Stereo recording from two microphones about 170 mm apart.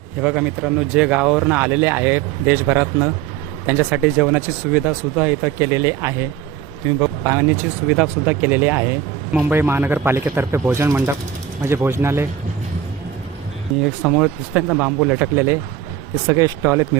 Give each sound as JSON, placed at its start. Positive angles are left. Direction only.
{"t": 0.2, "sound": "speech", "side_deg": -5}
{"t": 14.1, "sound": "speech", "side_deg": -5}